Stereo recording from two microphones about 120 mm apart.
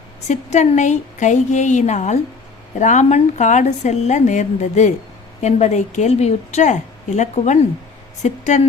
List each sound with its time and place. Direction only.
0.3 s speech: 80° left
2.7 s speech: 85° left
5.4 s a woman's voice: 70° left (ahead or behind)